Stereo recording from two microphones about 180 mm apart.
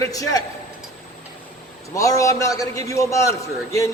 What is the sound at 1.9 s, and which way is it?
A man's voice, 20° left (ahead or behind).